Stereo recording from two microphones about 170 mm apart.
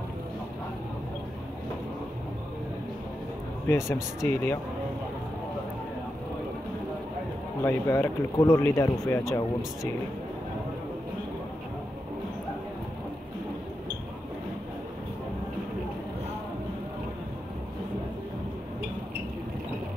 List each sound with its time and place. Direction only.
3.6 s speech: 15° left (ahead or behind)
7.6 s speech: 15° left (ahead or behind)